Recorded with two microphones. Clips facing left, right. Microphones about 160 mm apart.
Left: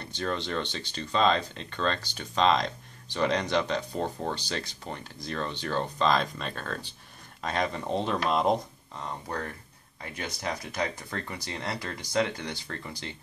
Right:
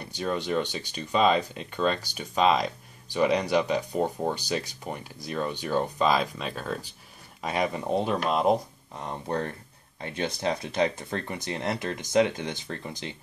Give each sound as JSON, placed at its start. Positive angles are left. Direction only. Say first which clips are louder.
{"t": 0.0, "sound": "speech", "louder": "right 2 dB", "side_deg": -10}
{"t": 8.9, "sound": "speech", "louder": "right 4 dB", "side_deg": -20}